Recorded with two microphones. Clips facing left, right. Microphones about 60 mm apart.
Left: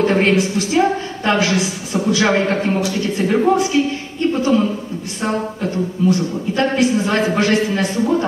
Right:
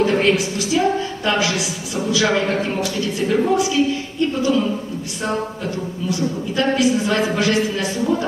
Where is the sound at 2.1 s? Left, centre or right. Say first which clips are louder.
Left 1 dB; left.